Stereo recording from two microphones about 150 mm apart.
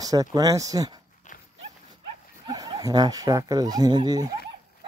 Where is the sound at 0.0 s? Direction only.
25° right (ahead or behind).